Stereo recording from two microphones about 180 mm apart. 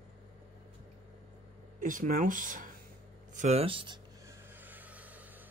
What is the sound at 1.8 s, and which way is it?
Speech, 45° right (ahead or behind).